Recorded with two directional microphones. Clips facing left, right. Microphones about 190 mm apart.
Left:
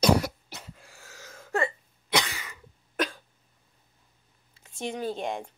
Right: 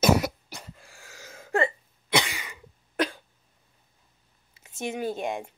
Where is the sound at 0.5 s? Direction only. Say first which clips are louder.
Right 1 dB; 5° right (ahead or behind).